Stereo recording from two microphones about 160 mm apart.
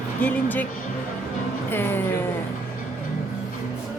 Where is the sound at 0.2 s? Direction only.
10° left (ahead or behind).